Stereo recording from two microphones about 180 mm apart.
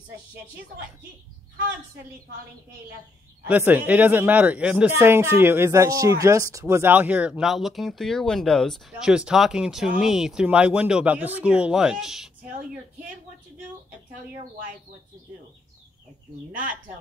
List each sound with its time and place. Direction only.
3.4 s speech: 10° right (ahead or behind)
16.5 s speech: 50° right (ahead or behind)